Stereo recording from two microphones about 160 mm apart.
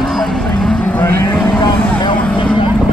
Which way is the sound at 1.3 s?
15° left (ahead or behind).